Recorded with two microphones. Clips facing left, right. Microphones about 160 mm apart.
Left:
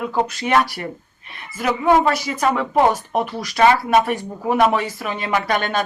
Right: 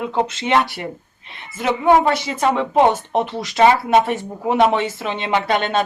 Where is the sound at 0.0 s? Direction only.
25° right (ahead or behind).